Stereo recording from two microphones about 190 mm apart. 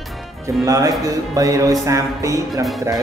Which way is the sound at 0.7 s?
15° right (ahead or behind).